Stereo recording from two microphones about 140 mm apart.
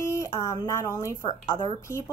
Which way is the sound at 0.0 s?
20° left (ahead or behind).